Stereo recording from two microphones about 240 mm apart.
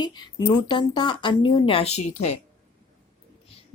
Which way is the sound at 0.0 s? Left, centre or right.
Centre.